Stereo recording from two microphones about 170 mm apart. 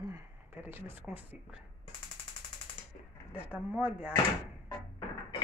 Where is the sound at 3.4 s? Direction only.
10° right (ahead or behind).